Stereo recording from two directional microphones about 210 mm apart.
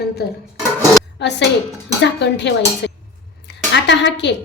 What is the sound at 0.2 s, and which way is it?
Speech, 50° left (ahead or behind).